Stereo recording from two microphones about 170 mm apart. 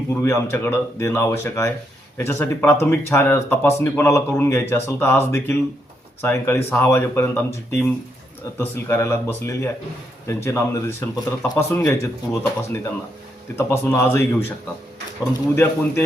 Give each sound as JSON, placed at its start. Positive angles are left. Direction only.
{"t": 0.2, "sound": "speech", "side_deg": 15}